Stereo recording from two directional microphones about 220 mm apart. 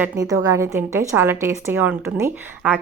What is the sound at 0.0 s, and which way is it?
A woman's voice, 15° right (ahead or behind).